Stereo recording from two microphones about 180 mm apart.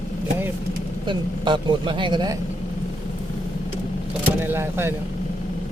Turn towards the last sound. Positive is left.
turn(degrees=-10)  # may be behind; listen again after turning